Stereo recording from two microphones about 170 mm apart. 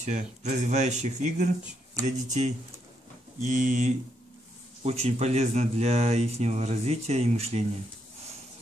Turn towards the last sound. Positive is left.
turn(degrees=-40)  # may be behind; listen again after turning